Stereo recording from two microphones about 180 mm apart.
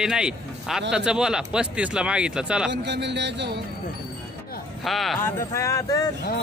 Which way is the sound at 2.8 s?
75° right (ahead or behind).